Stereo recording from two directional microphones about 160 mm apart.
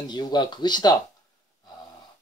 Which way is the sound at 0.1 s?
25° left (ahead or behind).